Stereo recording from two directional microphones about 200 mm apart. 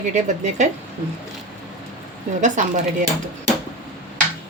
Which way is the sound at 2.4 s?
35° right (ahead or behind).